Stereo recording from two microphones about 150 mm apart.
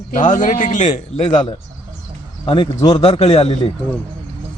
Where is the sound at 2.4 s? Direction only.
35° left (ahead or behind).